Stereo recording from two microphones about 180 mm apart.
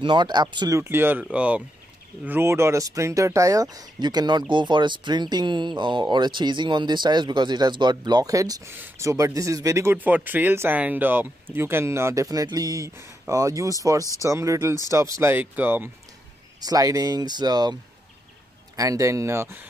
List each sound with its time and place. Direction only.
0.0 s speech: 25° right (ahead or behind)
18.8 s speech: 20° right (ahead or behind)